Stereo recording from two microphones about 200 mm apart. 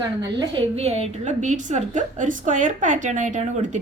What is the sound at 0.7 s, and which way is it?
A woman's voice, 30° right (ahead or behind).